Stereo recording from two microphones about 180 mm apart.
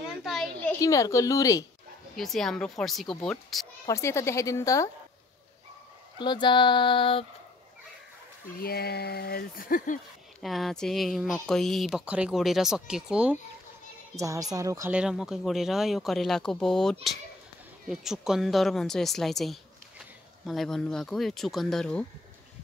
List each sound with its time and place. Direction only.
0.2 s a sound: centre (ahead or behind)
0.6 s a woman's voice: 15° left (ahead or behind)
2.1 s speech: centre (ahead or behind)
3.8 s a woman's voice: 15° left (ahead or behind)
6.1 s female singing: 25° left (ahead or behind)
8.6 s speech: 60° left (ahead or behind)
10.4 s speech: centre (ahead or behind)
14.2 s a woman's voice: 20° right (ahead or behind)
15.0 s speech: 5° right (ahead or behind)